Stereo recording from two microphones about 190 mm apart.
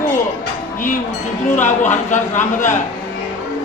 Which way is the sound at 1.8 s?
40° left (ahead or behind).